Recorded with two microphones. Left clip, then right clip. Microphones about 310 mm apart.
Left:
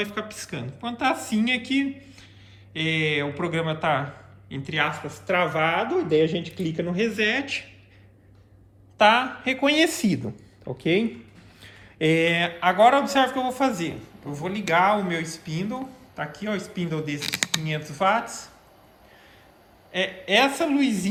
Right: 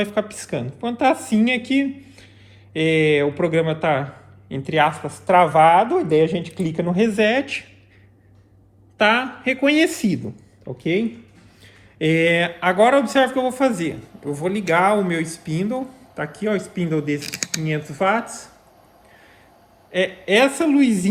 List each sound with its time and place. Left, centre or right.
0.0 s a woman's voice: centre
4.9 s a woman's voice: centre
9.0 s speech: centre
10.8 s speech: left
11.6 s speech: centre
17.2 s speech: centre
17.6 s speech: centre
19.9 s speech: centre